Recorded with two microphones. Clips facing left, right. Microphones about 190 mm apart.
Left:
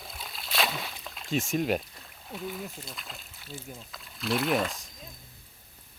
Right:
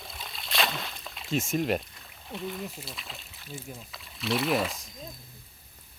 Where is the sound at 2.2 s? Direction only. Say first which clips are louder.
Right 1 dB; 5° left (ahead or behind).